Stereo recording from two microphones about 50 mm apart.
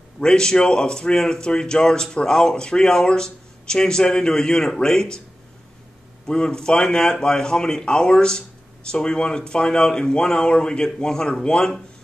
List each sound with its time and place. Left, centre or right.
0.2 s speech: centre
6.2 s speech: centre